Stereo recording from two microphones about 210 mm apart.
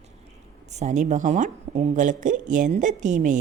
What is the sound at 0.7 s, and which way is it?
A man's voice, 35° right (ahead or behind).